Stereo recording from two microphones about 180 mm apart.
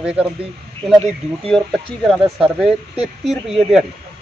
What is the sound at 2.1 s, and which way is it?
Speech, centre (ahead or behind).